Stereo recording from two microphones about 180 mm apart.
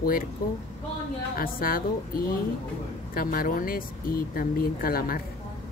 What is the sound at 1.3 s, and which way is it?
Speech, 55° left (ahead or behind).